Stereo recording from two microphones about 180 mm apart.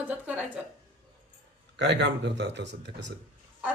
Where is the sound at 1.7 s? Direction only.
70° right (ahead or behind).